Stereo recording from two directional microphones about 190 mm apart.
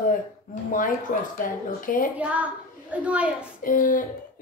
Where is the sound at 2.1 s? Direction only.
5° right (ahead or behind).